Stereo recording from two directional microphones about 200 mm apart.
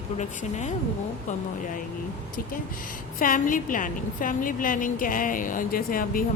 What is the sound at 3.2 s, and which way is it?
A woman's voice, 45° left (ahead or behind).